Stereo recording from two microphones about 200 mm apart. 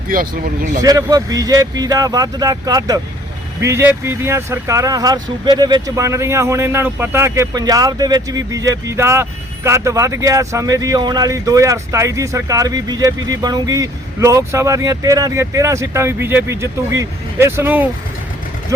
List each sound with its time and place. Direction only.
0.1 s speech: 45° right (ahead or behind)
0.8 s speech: 20° right (ahead or behind)